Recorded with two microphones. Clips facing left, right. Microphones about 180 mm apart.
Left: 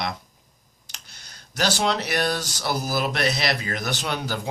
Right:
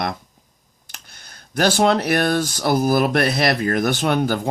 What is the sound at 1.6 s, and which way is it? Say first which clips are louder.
Speech: right 7 dB; 55° right (ahead or behind).